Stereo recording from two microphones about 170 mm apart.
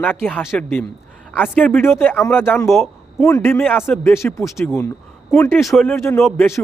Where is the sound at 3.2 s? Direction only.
15° left (ahead or behind).